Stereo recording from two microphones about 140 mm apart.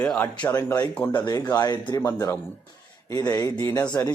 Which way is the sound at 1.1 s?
30° left (ahead or behind).